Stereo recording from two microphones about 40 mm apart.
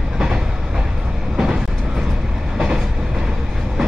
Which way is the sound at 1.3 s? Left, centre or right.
Centre.